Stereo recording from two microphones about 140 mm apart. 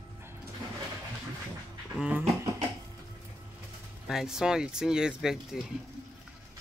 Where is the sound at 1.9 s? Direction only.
5° right (ahead or behind).